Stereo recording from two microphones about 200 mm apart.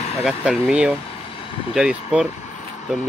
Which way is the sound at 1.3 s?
25° left (ahead or behind).